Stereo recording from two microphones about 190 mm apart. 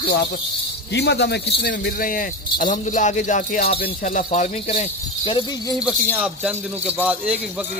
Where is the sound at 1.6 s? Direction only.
50° left (ahead or behind); by 5.7 s 25° left (ahead or behind).